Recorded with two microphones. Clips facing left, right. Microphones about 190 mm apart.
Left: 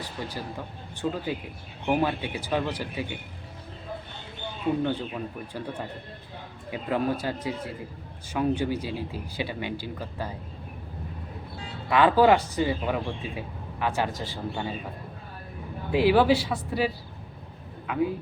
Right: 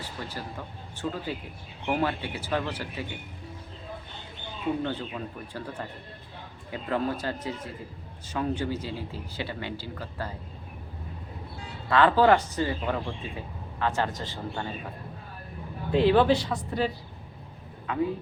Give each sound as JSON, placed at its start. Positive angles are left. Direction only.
{"t": 0.2, "sound": "speech", "side_deg": 15}
{"t": 4.8, "sound": "speech", "side_deg": 10}
{"t": 6.7, "sound": "speech", "side_deg": 15}
{"t": 11.9, "sound": "speech", "side_deg": 15}
{"t": 15.9, "sound": "speech", "side_deg": 5}